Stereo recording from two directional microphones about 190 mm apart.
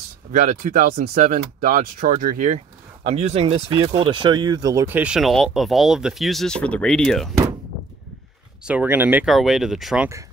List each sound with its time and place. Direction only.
0.3 s speech: 40° right (ahead or behind); by 7.3 s centre (ahead or behind)
8.6 s speech: 10° right (ahead or behind)